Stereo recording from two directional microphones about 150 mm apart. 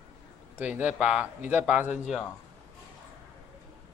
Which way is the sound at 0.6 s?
10° right (ahead or behind).